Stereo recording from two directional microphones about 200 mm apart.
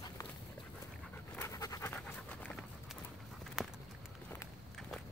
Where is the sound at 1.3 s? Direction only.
15° left (ahead or behind).